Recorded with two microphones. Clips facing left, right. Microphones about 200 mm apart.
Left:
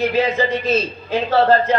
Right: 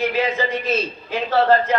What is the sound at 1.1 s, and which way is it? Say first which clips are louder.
Speech: left 2 dB; 30° left (ahead or behind).